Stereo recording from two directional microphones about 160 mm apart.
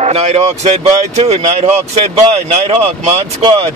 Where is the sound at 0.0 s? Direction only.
40° right (ahead or behind).